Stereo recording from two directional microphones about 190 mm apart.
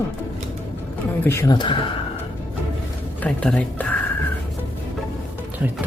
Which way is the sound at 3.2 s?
5° left (ahead or behind).